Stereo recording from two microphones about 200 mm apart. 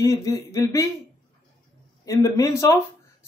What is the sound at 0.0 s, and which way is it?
Speech, 15° left (ahead or behind).